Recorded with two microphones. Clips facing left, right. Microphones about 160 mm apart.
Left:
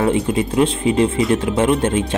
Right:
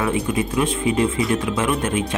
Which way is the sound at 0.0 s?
30° left (ahead or behind).